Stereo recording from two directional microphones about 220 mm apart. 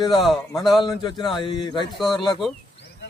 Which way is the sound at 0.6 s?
Centre (ahead or behind).